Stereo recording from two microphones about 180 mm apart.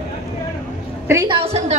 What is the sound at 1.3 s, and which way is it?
Speech, 35° right (ahead or behind).